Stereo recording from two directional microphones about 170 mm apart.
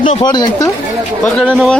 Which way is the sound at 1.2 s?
5° left (ahead or behind).